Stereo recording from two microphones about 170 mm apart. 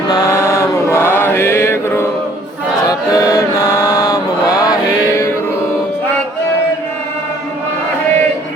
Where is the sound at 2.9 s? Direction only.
20° left (ahead or behind).